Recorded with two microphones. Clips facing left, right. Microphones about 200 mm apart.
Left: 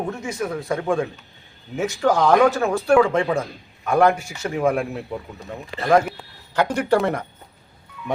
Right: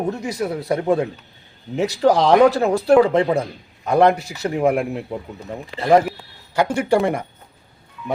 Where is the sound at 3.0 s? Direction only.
35° right (ahead or behind).